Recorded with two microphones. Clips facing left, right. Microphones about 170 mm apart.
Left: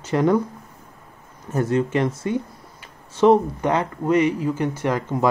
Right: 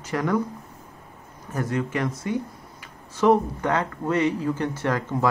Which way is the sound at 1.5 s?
25° left (ahead or behind).